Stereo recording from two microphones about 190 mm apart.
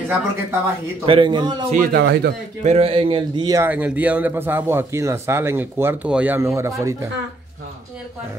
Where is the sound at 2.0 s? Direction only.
65° right (ahead or behind).